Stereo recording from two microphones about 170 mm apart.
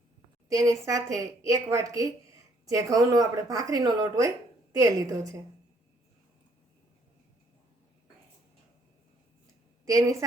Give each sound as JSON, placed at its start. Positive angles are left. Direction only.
{"t": 0.4, "sound": "a woman's voice", "side_deg": -20}
{"t": 9.8, "sound": "a woman's voice", "side_deg": -20}